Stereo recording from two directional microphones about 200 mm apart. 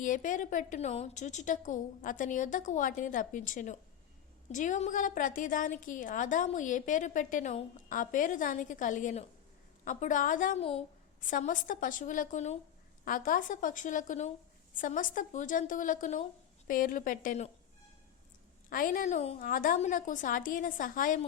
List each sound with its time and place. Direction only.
0.0 s a woman's voice: 40° left (ahead or behind)
10.6 s a woman's voice: 30° left (ahead or behind)
18.7 s a woman's voice: 45° left (ahead or behind)